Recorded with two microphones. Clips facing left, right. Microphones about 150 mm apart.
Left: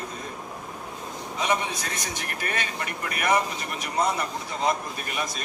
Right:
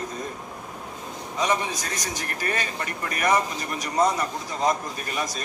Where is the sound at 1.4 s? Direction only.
40° right (ahead or behind).